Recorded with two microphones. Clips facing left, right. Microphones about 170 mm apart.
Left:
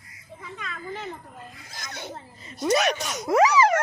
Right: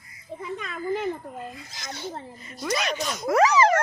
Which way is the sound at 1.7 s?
55° left (ahead or behind).